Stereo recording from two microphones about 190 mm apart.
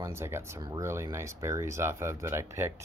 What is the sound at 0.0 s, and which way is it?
Speech, 15° right (ahead or behind).